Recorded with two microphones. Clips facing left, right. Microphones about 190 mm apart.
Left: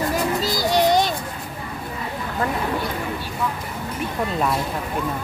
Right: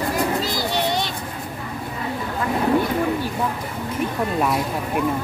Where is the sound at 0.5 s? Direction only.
40° left (ahead or behind).